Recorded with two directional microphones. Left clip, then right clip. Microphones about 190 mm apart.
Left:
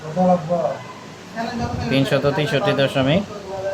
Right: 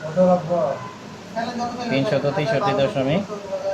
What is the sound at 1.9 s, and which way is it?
Speech, 35° left (ahead or behind).